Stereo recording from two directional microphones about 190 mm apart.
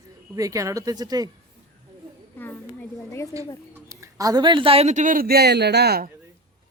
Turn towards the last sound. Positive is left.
turn(degrees=-55)  # may be behind; listen again after turning